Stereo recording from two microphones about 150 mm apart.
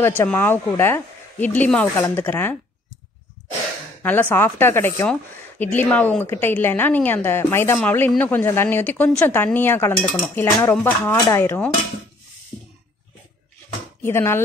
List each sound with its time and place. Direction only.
0.0 s speech: 15° left (ahead or behind)
4.0 s speech: 10° left (ahead or behind)
14.0 s speech: 15° left (ahead or behind)